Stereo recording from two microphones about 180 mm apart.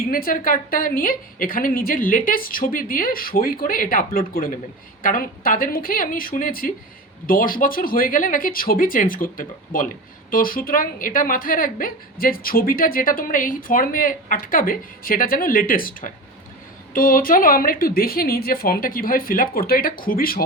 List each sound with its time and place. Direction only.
0.1 s a woman's voice: 50° left (ahead or behind)